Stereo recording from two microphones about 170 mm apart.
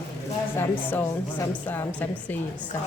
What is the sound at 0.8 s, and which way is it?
A woman's voice, 10° left (ahead or behind).